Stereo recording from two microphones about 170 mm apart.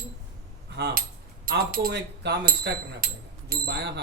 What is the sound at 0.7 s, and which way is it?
Cutlery, 90° right.